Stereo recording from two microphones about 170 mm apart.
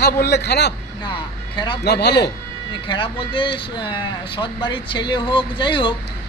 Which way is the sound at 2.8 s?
30° left (ahead or behind).